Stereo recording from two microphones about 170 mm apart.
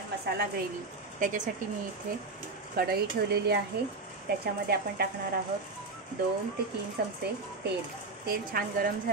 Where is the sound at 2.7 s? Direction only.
65° right (ahead or behind).